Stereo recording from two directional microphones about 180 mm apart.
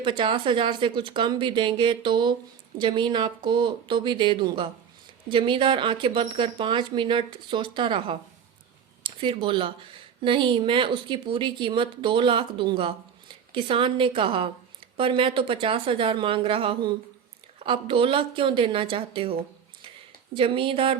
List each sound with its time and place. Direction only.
0.0 s speech: 25° right (ahead or behind)